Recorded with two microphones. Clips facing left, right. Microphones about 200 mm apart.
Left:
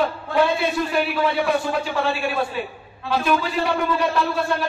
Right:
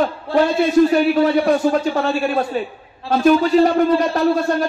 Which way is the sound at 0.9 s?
40° right (ahead or behind).